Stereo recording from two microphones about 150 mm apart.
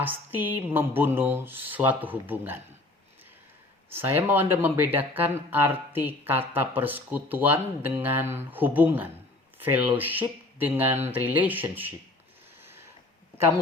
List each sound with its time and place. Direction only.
0.0 s speech: 10° right (ahead or behind)
3.9 s speech: 10° right (ahead or behind)
12.6 s a sound: 15° right (ahead or behind)